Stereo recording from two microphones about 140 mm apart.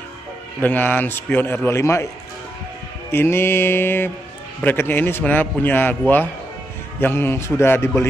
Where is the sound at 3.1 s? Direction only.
15° left (ahead or behind).